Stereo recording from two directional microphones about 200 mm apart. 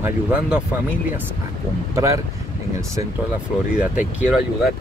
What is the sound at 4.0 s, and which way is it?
Speech, 5° right (ahead or behind).